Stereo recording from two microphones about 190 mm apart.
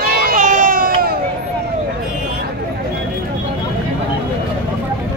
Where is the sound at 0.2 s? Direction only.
45° right (ahead or behind).